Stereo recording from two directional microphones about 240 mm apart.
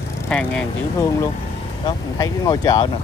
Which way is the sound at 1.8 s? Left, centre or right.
Centre.